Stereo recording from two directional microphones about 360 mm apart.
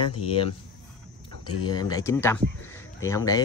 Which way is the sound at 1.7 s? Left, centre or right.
Centre.